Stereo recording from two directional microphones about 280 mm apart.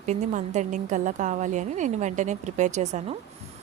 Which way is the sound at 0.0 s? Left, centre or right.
Right.